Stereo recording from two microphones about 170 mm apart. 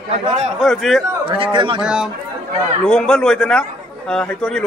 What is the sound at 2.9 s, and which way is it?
A man's voice, 5° left (ahead or behind).